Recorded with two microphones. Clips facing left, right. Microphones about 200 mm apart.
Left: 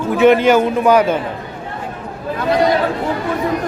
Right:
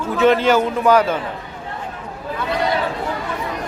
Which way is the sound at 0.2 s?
15° left (ahead or behind).